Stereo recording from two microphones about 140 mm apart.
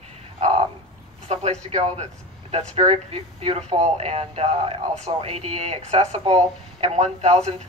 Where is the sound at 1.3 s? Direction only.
50° right (ahead or behind).